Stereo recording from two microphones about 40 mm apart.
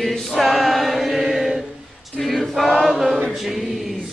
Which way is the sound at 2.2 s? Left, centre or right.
Centre.